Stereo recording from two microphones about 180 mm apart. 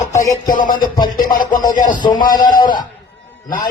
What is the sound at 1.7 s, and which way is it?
Speech, 45° left (ahead or behind).